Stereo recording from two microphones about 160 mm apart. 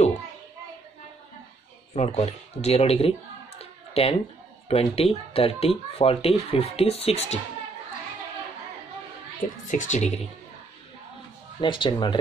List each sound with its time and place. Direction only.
2.0 s speech: 40° left (ahead or behind)
3.5 s computer keyboard: 40° left (ahead or behind)
4.6 s speech: 40° left (ahead or behind)
9.7 s speech: 50° left (ahead or behind)
11.6 s speech: 30° left (ahead or behind)